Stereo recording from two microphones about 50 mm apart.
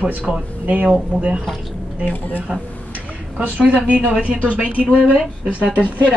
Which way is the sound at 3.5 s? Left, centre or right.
Right.